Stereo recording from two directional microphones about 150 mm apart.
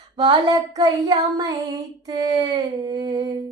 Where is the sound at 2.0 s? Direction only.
25° right (ahead or behind).